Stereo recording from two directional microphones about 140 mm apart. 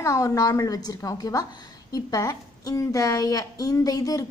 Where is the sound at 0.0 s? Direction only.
25° left (ahead or behind).